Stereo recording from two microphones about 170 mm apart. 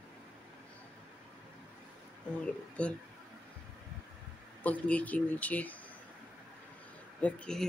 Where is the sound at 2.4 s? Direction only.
5° left (ahead or behind).